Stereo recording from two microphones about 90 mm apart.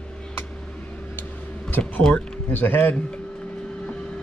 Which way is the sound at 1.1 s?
20° left (ahead or behind).